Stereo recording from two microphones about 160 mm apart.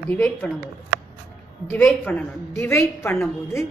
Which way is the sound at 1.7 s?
10° left (ahead or behind).